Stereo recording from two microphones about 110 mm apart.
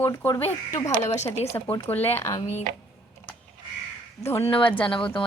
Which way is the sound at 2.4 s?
75° left (ahead or behind).